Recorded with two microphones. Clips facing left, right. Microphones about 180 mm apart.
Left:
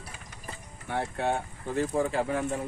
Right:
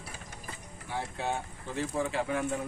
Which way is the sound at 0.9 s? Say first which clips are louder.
Left 5 dB; 60° left (ahead or behind).